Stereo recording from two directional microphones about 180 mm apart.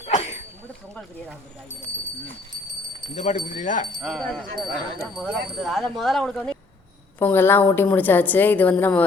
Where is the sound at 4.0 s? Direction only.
Centre (ahead or behind).